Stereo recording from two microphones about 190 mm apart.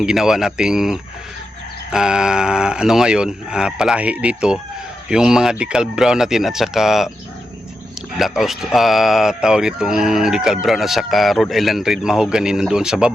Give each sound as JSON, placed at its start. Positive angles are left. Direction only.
{"t": 0.0, "sound": "speech", "side_deg": -5}
{"t": 8.2, "sound": "speech", "side_deg": 0}